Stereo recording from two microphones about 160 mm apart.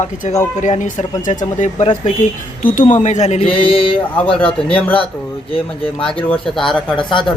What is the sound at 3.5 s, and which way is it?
Speech, 35° left (ahead or behind).